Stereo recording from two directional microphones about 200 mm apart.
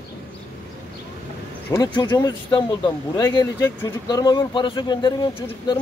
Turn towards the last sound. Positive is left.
turn(degrees=20)  # may be behind; listen again after turning